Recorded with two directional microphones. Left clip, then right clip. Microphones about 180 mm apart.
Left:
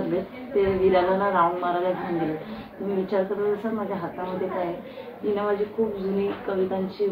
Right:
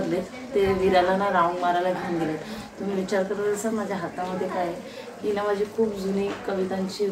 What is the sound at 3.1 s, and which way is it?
A woman's voice, 15° right (ahead or behind).